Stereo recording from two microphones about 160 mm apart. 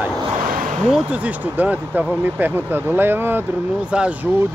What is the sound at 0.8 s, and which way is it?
Speech, 5° right (ahead or behind).